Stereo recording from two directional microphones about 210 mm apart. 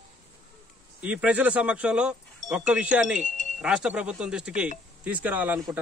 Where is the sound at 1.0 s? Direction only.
5° right (ahead or behind).